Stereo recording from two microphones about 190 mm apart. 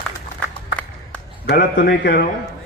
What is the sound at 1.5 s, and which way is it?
Speech, 60° left (ahead or behind).